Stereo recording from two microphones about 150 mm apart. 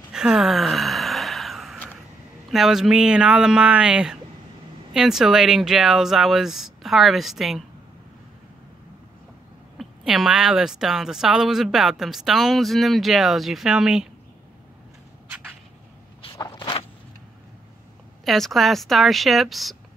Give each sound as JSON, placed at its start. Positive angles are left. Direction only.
{"t": 0.1, "sound": "gasp", "side_deg": -5}
{"t": 2.5, "sound": "a woman's voice", "side_deg": 0}
{"t": 9.8, "sound": "a woman's voice", "side_deg": -5}
{"t": 16.3, "sound": "walk", "side_deg": 25}
{"t": 18.2, "sound": "a woman's voice", "side_deg": 0}